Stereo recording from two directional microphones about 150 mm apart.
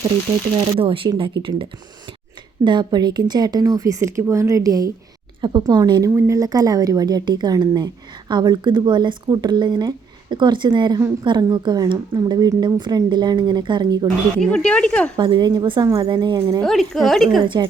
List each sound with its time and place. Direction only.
0.8 s speech: 35° right (ahead or behind)
2.6 s speech: 30° right (ahead or behind)
6.1 s speech: 15° right (ahead or behind)
14.4 s speech: 5° left (ahead or behind)
15.1 s speech: 30° right (ahead or behind)
16.6 s a woman's voice: centre (ahead or behind)
17.4 s speech: 30° right (ahead or behind)